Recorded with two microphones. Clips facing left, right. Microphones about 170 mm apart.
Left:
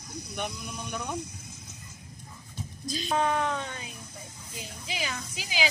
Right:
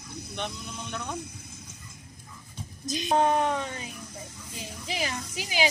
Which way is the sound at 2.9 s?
20° right (ahead or behind).